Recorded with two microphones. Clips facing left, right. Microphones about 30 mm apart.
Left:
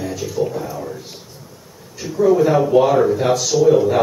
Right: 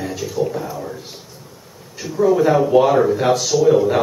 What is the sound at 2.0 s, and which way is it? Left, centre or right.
Speech, centre.